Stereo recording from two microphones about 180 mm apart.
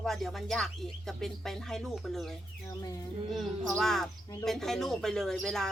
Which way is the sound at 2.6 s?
20° left (ahead or behind).